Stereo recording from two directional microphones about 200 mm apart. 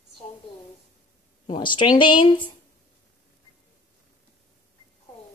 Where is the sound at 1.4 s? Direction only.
25° left (ahead or behind).